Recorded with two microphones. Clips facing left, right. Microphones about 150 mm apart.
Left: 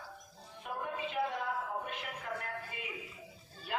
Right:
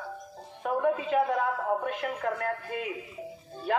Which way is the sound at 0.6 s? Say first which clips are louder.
Right 12 dB; 60° right (ahead or behind).